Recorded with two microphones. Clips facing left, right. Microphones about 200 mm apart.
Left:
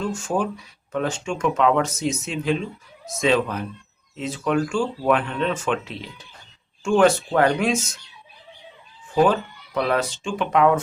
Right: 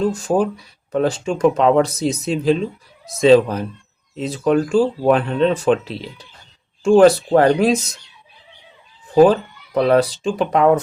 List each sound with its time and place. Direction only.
0.0 s speech: 35° right (ahead or behind)
9.2 s speech: 35° right (ahead or behind)